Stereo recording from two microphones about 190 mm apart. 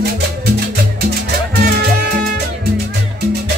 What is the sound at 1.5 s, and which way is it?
Music, 55° right (ahead or behind).